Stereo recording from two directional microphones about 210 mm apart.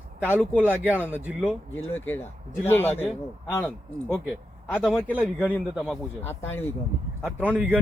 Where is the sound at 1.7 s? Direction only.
70° left (ahead or behind).